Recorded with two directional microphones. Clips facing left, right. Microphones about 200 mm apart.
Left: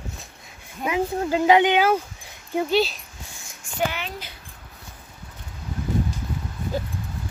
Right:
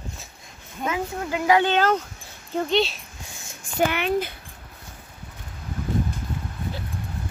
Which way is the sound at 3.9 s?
60° right (ahead or behind).